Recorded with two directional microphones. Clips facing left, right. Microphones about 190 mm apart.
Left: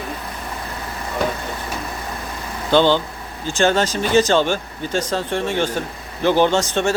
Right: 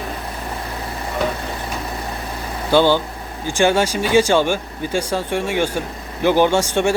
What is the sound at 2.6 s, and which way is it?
Speech, 10° right (ahead or behind).